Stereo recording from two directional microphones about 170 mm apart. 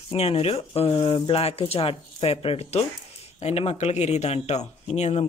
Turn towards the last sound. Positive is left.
turn(degrees=40)  # may be behind; listen again after turning